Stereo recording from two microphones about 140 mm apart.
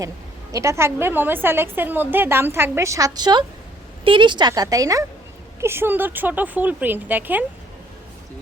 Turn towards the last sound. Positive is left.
turn(degrees=-10)  # may be behind; listen again after turning